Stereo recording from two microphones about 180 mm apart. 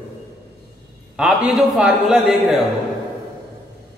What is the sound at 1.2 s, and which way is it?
A man's voice, 5° right (ahead or behind).